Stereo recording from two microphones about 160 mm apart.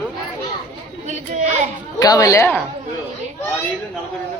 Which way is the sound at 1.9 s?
25° left (ahead or behind).